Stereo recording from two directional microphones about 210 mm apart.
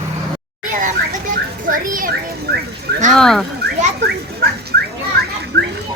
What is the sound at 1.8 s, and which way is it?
Speech, 40° right (ahead or behind).